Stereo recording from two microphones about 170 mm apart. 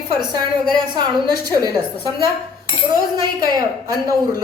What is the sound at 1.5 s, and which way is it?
Speech, 20° right (ahead or behind).